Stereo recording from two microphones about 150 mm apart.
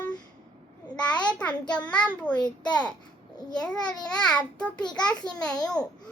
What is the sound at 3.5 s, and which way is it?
A child's voice, 5° left (ahead or behind).